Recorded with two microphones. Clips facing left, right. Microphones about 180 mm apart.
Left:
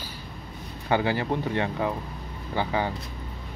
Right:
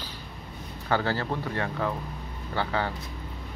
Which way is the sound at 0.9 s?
15° left (ahead or behind).